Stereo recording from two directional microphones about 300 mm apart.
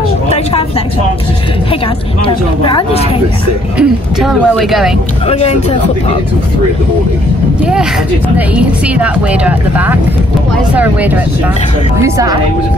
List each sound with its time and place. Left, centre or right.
2.2 s speech: centre
3.7 s speech: centre
5.2 s speech: left
7.6 s speech: centre